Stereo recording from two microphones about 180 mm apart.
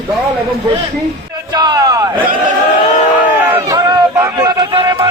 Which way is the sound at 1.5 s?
25° right (ahead or behind).